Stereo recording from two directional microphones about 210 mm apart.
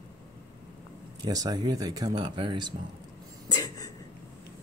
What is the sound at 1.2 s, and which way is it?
Speech, 20° right (ahead or behind).